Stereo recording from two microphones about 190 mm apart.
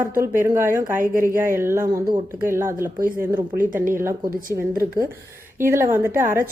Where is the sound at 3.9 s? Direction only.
15° right (ahead or behind).